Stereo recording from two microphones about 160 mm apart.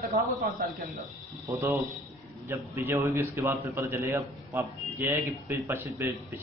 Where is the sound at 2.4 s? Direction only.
15° right (ahead or behind).